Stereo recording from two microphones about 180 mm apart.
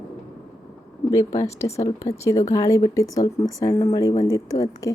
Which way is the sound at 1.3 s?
15° left (ahead or behind).